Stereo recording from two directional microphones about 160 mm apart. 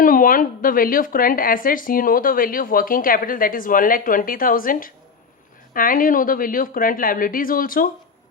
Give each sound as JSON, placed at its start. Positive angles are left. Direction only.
{"t": 0.0, "sound": "speech", "side_deg": 60}